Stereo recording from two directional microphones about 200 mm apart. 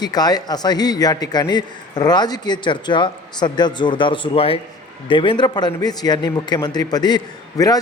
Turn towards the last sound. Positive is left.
turn(degrees=20)  # may be behind; listen again after turning